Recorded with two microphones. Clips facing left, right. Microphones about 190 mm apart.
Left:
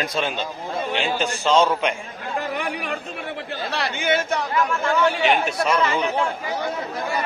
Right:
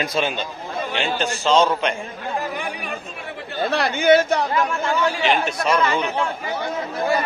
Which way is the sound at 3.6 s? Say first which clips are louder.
Right 8 dB; 50° right (ahead or behind).